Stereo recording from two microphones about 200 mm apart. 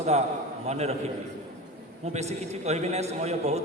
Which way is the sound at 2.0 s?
35° right (ahead or behind).